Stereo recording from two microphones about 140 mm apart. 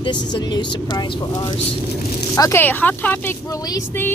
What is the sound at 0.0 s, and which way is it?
Speech, 30° left (ahead or behind).